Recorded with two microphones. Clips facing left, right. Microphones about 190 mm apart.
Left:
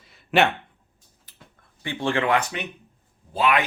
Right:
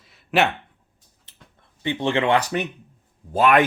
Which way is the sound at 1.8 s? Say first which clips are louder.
Right 3 dB; 20° right (ahead or behind).